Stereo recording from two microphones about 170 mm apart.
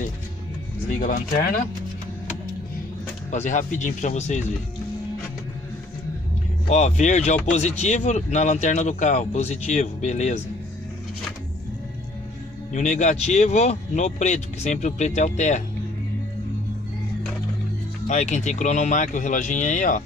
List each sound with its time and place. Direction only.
0.8 s speech: 50° left (ahead or behind)
3.3 s speech: 45° left (ahead or behind)
6.7 s speech: 45° left (ahead or behind)
12.7 s speech: 45° left (ahead or behind)
18.0 s speech: 45° left (ahead or behind)